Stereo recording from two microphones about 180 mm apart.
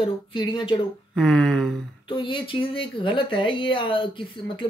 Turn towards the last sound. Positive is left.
turn(degrees=30)  # may be behind; listen again after turning